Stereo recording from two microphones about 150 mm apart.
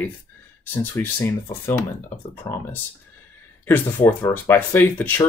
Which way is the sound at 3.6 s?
10° left (ahead or behind).